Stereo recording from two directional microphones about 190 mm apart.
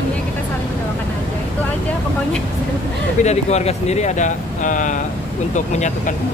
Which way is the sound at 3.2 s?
35° left (ahead or behind).